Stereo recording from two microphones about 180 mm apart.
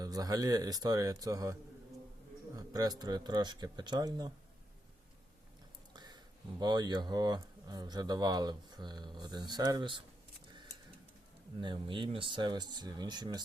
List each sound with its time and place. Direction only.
0.0 s speech: 20° right (ahead or behind)
2.6 s speech: 20° right (ahead or behind)
6.6 s speech: 25° right (ahead or behind)
11.6 s speech: 25° right (ahead or behind)